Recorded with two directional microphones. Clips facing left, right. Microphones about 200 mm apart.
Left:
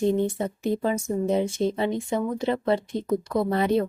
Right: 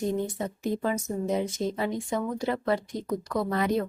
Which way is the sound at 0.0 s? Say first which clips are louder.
Left 5 dB; 25° left (ahead or behind).